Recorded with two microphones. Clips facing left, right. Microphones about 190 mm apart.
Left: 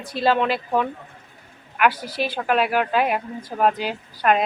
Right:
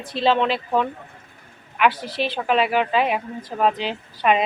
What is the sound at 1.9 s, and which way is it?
Speech, 45° left (ahead or behind).